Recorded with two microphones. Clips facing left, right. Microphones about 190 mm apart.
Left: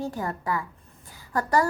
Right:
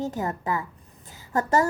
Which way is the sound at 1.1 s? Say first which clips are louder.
Right 2 dB; 25° right (ahead or behind).